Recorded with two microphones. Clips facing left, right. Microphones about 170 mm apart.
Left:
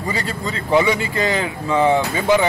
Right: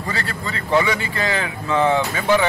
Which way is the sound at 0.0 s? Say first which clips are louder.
Left 3 dB; 15° left (ahead or behind).